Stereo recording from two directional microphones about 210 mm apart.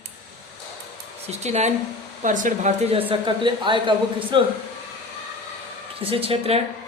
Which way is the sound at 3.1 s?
20° right (ahead or behind).